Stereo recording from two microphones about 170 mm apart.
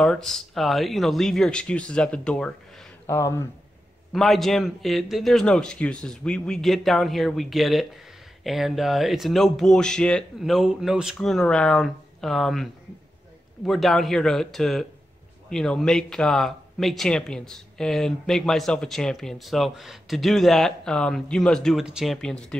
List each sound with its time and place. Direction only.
0.0 s speech: 5° left (ahead or behind)
3.1 s speech: 15° left (ahead or behind)
4.1 s speech: centre (ahead or behind)
13.7 s speech: centre (ahead or behind)